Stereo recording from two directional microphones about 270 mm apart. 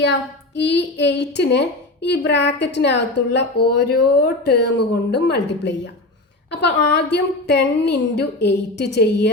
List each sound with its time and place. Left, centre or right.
0.0 s speech: left